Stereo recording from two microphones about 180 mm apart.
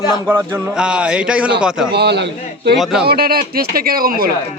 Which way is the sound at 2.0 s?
65° right (ahead or behind).